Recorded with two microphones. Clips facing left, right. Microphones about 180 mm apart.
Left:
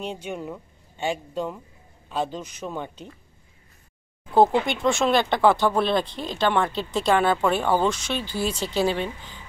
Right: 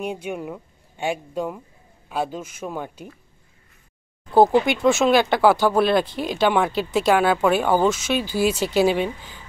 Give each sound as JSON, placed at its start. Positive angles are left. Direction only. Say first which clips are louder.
{"t": 0.0, "sound": "speech", "louder": "right 3 dB", "side_deg": -10}
{"t": 4.6, "sound": "speech", "louder": "right 4 dB", "side_deg": -5}